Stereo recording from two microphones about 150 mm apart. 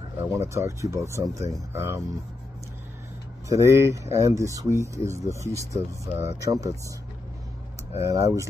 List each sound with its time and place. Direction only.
0.2 s speech: 15° right (ahead or behind)
3.4 s speech: 20° right (ahead or behind)
8.0 s speech: 20° right (ahead or behind)